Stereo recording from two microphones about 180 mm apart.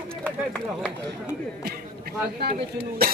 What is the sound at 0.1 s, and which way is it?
Speech, 5° left (ahead or behind).